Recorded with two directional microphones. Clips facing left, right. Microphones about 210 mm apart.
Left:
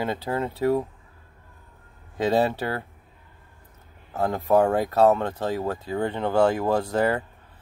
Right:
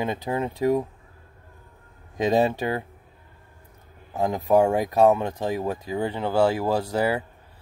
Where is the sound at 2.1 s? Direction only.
15° right (ahead or behind).